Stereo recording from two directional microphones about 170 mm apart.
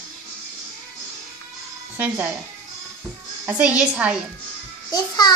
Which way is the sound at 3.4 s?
10° right (ahead or behind).